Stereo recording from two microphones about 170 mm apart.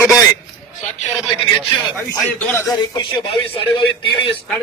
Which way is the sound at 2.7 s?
25° left (ahead or behind).